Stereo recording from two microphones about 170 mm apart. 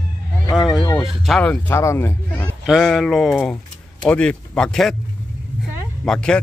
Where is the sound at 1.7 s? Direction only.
15° left (ahead or behind).